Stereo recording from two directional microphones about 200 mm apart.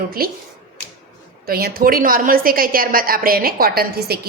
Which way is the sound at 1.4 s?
50° right (ahead or behind).